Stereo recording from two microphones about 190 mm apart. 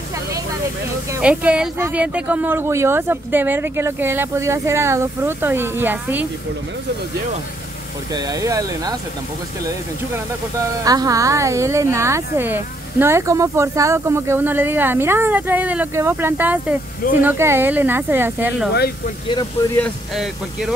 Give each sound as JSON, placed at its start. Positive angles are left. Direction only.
{"t": 1.1, "sound": "speech", "side_deg": -5}
{"t": 8.1, "sound": "speech", "side_deg": -20}
{"t": 10.8, "sound": "speech", "side_deg": -20}